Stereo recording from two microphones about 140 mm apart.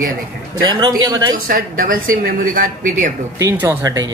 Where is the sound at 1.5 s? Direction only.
80° right.